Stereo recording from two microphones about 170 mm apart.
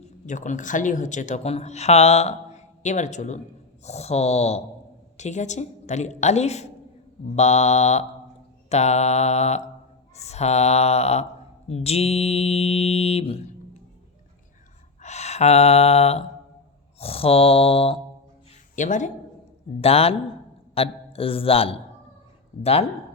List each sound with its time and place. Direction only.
0.0 s speech: 45° left (ahead or behind)
3.8 s mantra: 40° left (ahead or behind)
5.1 s speech: 45° left (ahead or behind)
7.3 s mantra: 40° left (ahead or behind)
15.0 s a sound: 40° left (ahead or behind)
17.0 s mantra: 35° left (ahead or behind)
18.8 s speech: 45° left (ahead or behind)
19.8 s mantra: 35° left (ahead or behind)
20.7 s a man's voice: 35° left (ahead or behind)
22.6 s mantra: 35° left (ahead or behind)